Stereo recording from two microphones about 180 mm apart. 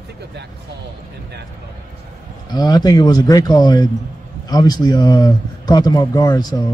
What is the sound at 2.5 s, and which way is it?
A man's voice, 20° left (ahead or behind).